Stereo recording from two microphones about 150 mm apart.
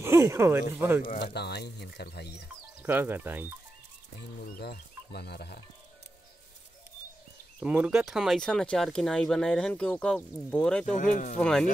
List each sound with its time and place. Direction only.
0.0 s speech: 20° right (ahead or behind)
1.0 s speech: 80° left
2.8 s speech: 15° right (ahead or behind)
4.6 s speech: 90° left
7.6 s speech: 5° right (ahead or behind)
10.9 s speech: 60° left (ahead or behind)
11.3 s speech: 5° left (ahead or behind)